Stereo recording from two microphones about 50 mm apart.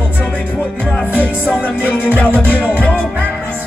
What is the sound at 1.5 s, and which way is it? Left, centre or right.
Music, left.